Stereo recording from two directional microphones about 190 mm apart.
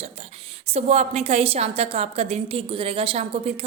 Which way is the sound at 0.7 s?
35° right (ahead or behind).